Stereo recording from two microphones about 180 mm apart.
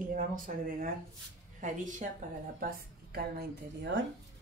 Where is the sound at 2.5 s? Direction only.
55° right (ahead or behind); by 4.0 s 75° right (ahead or behind).